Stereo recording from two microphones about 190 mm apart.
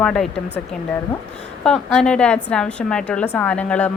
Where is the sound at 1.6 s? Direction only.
5° left (ahead or behind).